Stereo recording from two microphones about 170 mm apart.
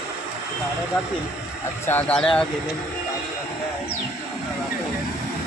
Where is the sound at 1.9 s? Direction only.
10° left (ahead or behind).